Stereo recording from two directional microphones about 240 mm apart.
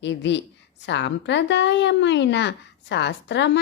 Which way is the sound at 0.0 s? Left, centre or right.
Left.